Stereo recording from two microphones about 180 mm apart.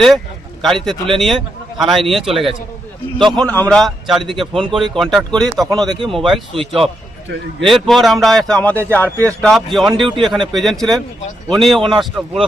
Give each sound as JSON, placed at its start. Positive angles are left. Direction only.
{"t": 0.6, "sound": "a man's voice", "side_deg": 0}
{"t": 5.8, "sound": "speech", "side_deg": -25}
{"t": 6.1, "sound": "a man's voice", "side_deg": 0}
{"t": 7.7, "sound": "a man's voice", "side_deg": 0}